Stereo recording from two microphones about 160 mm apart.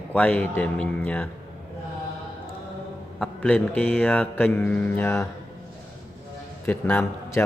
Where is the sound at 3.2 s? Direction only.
5° left (ahead or behind).